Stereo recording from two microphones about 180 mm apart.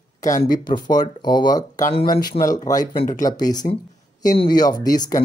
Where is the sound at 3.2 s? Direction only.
20° left (ahead or behind).